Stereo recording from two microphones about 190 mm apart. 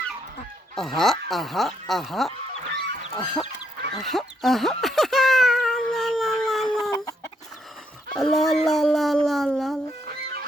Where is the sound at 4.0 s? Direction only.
Centre (ahead or behind).